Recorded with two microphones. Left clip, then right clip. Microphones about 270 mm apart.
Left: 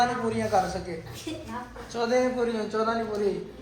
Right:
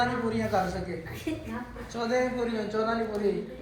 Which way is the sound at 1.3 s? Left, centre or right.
Centre.